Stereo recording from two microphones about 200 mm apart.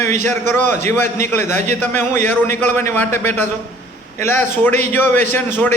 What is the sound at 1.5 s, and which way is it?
Speech, 40° right (ahead or behind).